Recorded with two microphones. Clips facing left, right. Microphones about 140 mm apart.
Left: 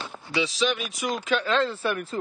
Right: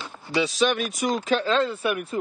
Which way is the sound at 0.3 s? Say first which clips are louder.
Right 3 dB; 45° right (ahead or behind).